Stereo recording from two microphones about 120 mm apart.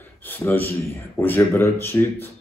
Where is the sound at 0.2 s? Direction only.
20° left (ahead or behind).